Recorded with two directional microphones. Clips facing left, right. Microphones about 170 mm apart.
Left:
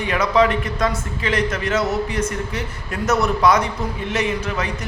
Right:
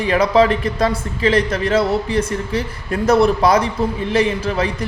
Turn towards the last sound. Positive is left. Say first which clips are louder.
# right 4 dB
turn(degrees=-30)  # may be behind; listen again after turning